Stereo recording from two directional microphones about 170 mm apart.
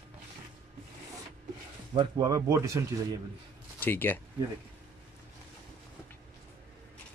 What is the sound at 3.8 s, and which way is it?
Speech, 10° left (ahead or behind).